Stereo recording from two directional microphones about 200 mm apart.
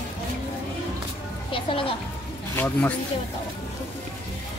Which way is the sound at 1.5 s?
25° left (ahead or behind).